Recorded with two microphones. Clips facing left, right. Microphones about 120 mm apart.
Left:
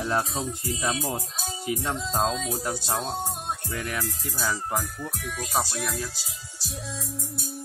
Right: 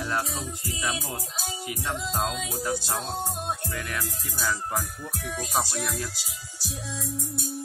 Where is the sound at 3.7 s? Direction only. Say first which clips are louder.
Left 2 dB; 15° left (ahead or behind).